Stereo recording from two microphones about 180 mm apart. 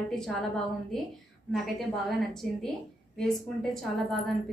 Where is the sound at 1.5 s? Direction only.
Centre (ahead or behind).